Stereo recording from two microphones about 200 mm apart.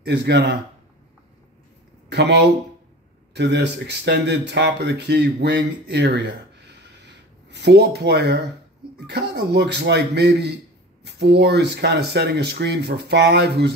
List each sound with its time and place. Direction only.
0.0 s speech: 55° right (ahead or behind)
2.0 s speech: 55° right (ahead or behind)